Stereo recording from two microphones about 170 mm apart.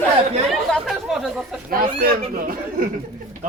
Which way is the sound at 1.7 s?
60° right (ahead or behind).